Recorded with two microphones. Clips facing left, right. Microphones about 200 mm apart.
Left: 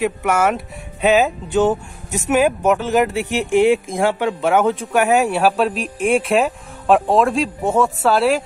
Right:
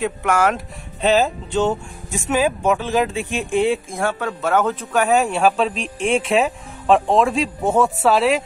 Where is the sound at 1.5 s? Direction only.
20° left (ahead or behind).